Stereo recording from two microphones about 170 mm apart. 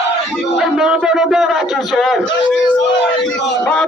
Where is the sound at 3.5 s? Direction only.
5° left (ahead or behind).